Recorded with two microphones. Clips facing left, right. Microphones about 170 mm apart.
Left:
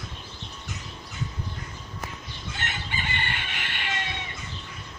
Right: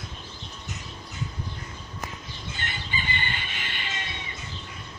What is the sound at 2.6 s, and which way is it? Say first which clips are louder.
Chicken: left 1 dB; 70° left (ahead or behind).